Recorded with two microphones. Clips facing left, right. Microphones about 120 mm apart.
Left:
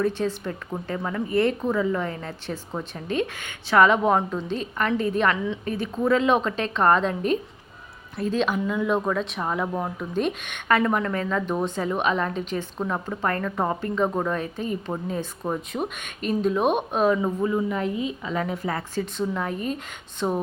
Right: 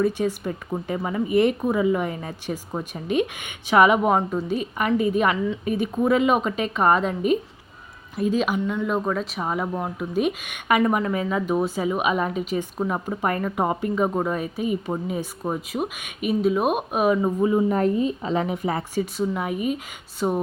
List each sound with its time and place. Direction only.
0.0 s speech: 10° right (ahead or behind)
17.4 s a woman's voice: 25° right (ahead or behind)
17.7 s a woman's voice: 45° right (ahead or behind)
18.3 s a woman's voice: 20° right (ahead or behind)